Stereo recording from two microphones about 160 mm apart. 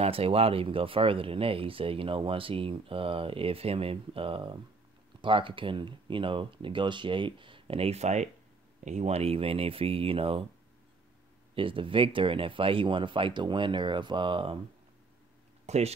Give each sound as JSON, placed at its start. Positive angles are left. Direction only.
{"t": 0.0, "sound": "speech", "side_deg": -40}
{"t": 11.5, "sound": "speech", "side_deg": -35}
{"t": 15.6, "sound": "speech", "side_deg": -45}